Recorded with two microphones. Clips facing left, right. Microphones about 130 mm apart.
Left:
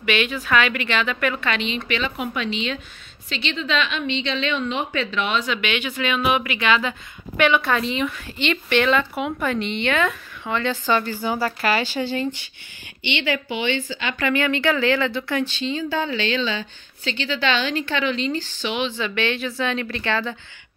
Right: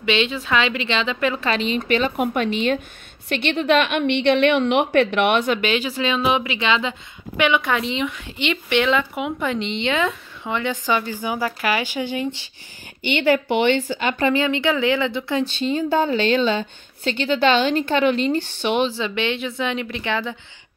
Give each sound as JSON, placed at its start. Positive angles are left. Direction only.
{"t": 0.0, "sound": "speech", "side_deg": -25}
{"t": 1.4, "sound": "a woman's voice", "side_deg": -35}
{"t": 5.6, "sound": "a woman's voice", "side_deg": -35}
{"t": 13.0, "sound": "speech", "side_deg": -45}
{"t": 13.5, "sound": "speech", "side_deg": -60}
{"t": 14.1, "sound": "speech", "side_deg": -25}
{"t": 15.4, "sound": "speech", "side_deg": -45}
{"t": 18.9, "sound": "a woman's voice", "side_deg": -25}